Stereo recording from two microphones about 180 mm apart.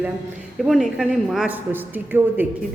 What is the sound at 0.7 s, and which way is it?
A woman's voice, 5° right (ahead or behind).